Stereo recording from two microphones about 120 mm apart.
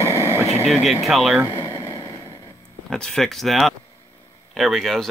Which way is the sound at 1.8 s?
20° left (ahead or behind).